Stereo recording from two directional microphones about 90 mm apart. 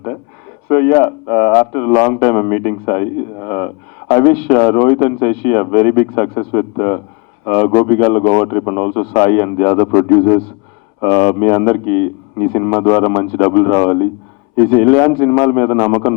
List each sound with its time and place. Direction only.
0.7 s a man's voice: 15° left (ahead or behind)